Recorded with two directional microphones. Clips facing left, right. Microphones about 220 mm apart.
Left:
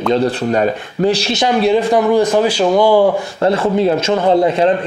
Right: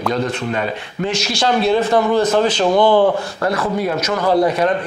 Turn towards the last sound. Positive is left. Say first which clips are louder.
# left 3 dB
turn(degrees=25)  # may be behind; listen again after turning